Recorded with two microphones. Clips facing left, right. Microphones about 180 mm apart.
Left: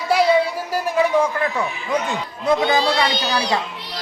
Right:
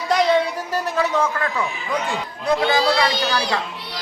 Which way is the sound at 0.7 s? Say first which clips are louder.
Left 4 dB; 10° left (ahead or behind).